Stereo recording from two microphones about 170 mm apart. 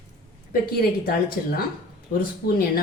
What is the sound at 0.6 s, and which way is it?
A woman's voice, 65° left (ahead or behind).